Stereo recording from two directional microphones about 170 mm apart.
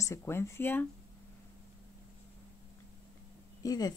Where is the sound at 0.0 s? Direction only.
15° left (ahead or behind).